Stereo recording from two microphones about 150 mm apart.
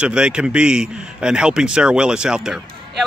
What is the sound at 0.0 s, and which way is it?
A man's voice, 5° right (ahead or behind).